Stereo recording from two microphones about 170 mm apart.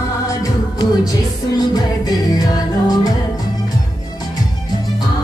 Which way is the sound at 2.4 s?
20° left (ahead or behind).